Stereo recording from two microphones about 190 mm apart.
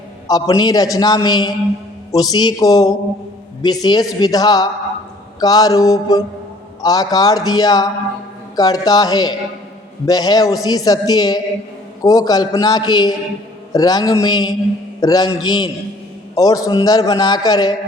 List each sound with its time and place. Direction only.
0.3 s a man's voice: 20° left (ahead or behind)